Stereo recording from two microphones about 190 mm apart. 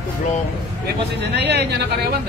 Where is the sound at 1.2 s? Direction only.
65° right (ahead or behind).